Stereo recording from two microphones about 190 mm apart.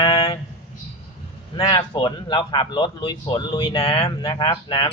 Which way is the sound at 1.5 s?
25° left (ahead or behind).